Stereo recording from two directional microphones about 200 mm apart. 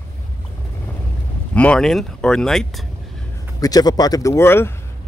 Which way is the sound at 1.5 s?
5° left (ahead or behind).